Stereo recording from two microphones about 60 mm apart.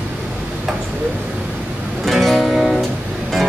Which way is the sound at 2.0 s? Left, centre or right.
Centre.